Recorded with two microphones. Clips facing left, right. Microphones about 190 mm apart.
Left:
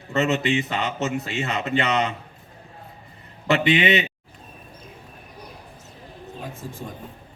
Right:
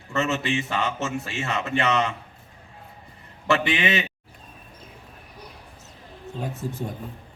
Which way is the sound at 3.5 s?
20° left (ahead or behind).